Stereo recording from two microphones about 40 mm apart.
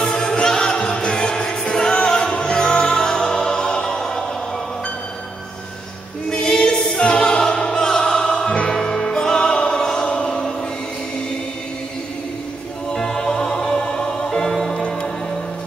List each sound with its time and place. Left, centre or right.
0.1 s choir: centre
2.0 s music: centre
6.3 s choir: centre
12.9 s music: centre